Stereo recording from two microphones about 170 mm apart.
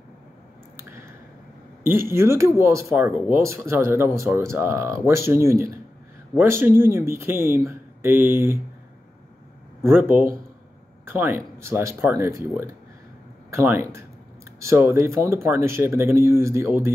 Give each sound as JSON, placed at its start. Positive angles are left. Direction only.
{"t": 1.8, "sound": "speech", "side_deg": -15}
{"t": 9.8, "sound": "speech", "side_deg": -10}